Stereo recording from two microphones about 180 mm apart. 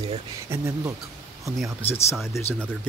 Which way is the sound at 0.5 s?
15° right (ahead or behind).